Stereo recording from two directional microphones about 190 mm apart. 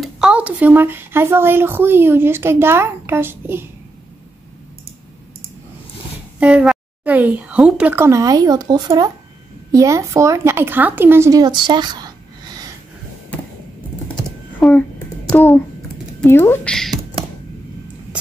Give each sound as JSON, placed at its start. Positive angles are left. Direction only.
{"t": 0.0, "sound": "speech", "side_deg": -5}
{"t": 6.4, "sound": "speech", "side_deg": -5}
{"t": 14.6, "sound": "a sound", "side_deg": 5}
{"t": 16.2, "sound": "speech", "side_deg": 10}